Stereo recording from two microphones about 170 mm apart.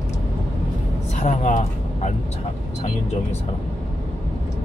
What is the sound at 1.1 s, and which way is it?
Speech, 45° left (ahead or behind).